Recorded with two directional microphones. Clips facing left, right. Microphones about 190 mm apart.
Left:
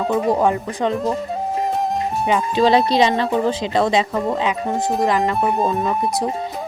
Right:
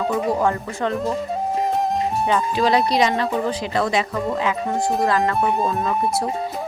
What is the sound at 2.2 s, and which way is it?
Speech, 20° left (ahead or behind).